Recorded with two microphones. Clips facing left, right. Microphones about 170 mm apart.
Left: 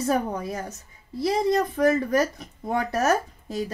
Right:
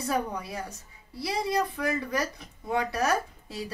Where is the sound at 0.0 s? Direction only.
45° left (ahead or behind).